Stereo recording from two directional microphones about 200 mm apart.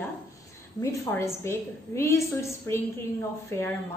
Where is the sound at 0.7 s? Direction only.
15° left (ahead or behind).